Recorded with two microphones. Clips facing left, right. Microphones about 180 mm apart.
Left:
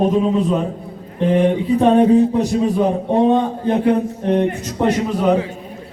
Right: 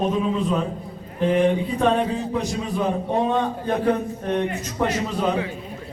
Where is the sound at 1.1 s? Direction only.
30° left (ahead or behind).